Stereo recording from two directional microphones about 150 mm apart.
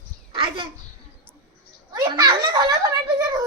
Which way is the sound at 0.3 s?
35° right (ahead or behind).